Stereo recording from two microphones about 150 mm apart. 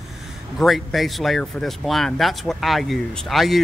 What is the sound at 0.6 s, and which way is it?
Speech, centre (ahead or behind).